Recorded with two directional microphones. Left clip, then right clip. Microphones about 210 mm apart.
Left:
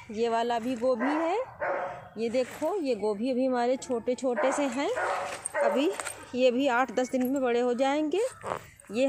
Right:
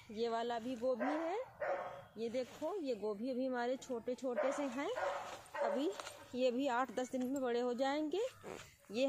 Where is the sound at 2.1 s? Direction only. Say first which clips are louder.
Left 12 dB; 10° left (ahead or behind).